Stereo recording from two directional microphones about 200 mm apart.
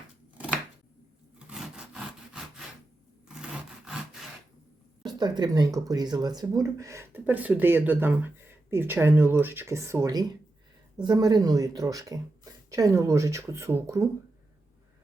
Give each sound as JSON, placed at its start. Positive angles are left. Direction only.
{"t": 1.5, "sound": "sawing", "side_deg": -5}
{"t": 3.2, "sound": "wood", "side_deg": -5}
{"t": 5.0, "sound": "speech", "side_deg": -20}